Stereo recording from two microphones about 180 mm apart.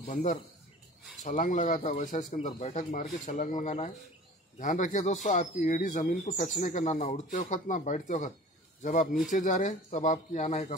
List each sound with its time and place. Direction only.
0.0 s speech: 45° left (ahead or behind)
9.3 s speech: 45° left (ahead or behind)